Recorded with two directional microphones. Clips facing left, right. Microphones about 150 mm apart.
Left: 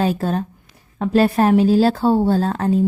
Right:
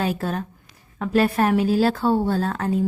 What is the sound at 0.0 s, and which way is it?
A woman's voice, 30° left (ahead or behind).